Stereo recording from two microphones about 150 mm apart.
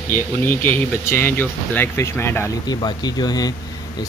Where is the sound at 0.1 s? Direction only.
15° left (ahead or behind).